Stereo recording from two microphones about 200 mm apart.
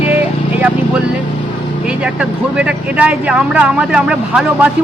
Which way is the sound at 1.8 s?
5° right (ahead or behind).